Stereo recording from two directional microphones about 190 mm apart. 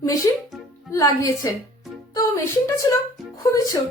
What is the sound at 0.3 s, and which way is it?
Music, 20° left (ahead or behind).